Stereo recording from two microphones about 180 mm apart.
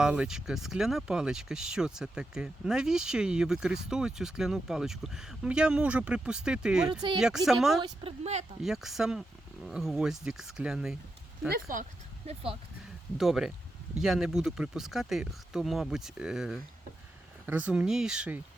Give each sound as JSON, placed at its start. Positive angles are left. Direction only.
{"t": 0.0, "sound": "speech", "side_deg": -5}
{"t": 8.0, "sound": "speech", "side_deg": -35}
{"t": 8.6, "sound": "speech", "side_deg": 0}
{"t": 11.7, "sound": "speech", "side_deg": -40}
{"t": 13.1, "sound": "speech", "side_deg": 0}